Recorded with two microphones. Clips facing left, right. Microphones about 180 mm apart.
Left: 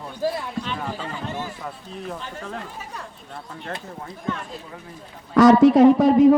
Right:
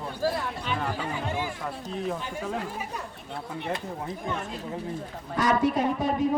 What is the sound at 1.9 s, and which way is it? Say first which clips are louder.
Speech: right 4 dB; 5° right (ahead or behind).